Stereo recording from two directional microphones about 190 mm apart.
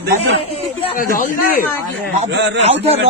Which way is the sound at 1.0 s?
45° left (ahead or behind).